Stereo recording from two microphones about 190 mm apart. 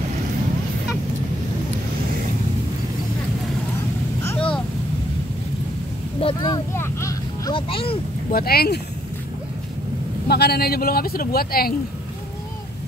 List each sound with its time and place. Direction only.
4.2 s vehicle: 10° left (ahead or behind)
6.2 s a sound: 20° left (ahead or behind)
8.3 s speech: 55° left (ahead or behind)
10.2 s speech: 55° left (ahead or behind)